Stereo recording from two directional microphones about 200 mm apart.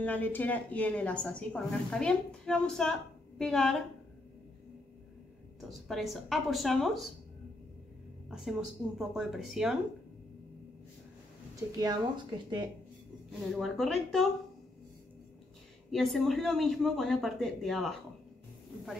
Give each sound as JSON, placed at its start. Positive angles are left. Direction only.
{"t": 0.0, "sound": "a woman's voice", "side_deg": 10}
{"t": 5.7, "sound": "a woman's voice", "side_deg": 0}
{"t": 8.3, "sound": "a woman's voice", "side_deg": 0}
{"t": 11.5, "sound": "speech", "side_deg": -20}
{"t": 13.6, "sound": "a woman's voice", "side_deg": 0}
{"t": 15.9, "sound": "a woman's voice", "side_deg": 0}